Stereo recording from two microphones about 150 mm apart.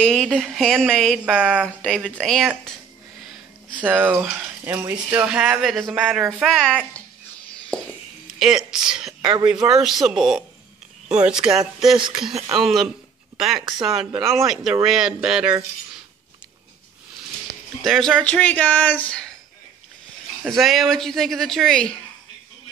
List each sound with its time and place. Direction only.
0.0 s speech: 5° left (ahead or behind)
1.8 s speech: 5° left (ahead or behind)
3.7 s speech: 10° right (ahead or behind); by 6.9 s 5° left (ahead or behind)
7.7 s a sound: 5° left (ahead or behind)
8.3 s speech: 5° right (ahead or behind)
11.5 s speech: 5° right (ahead or behind)
12.0 s speech: 30° right (ahead or behind)
12.5 s speech: centre (ahead or behind)
17.8 s speech: 5° left (ahead or behind)
20.4 s speech: centre (ahead or behind)